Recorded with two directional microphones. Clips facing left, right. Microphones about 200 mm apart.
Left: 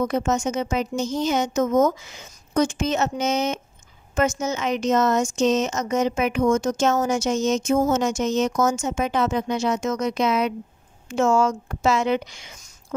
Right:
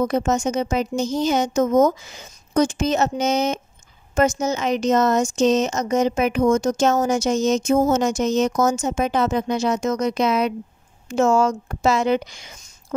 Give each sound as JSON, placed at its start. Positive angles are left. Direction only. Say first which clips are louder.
{"t": 0.0, "sound": "a woman's voice", "louder": "right 2 dB", "side_deg": -35}